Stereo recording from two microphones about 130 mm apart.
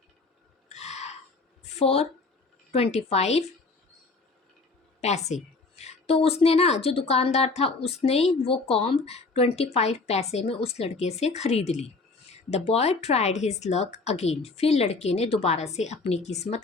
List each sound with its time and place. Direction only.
0.7 s a sound: 60° left (ahead or behind)
1.7 s a woman's voice: 50° left (ahead or behind)
4.9 s a woman's voice: 60° left (ahead or behind)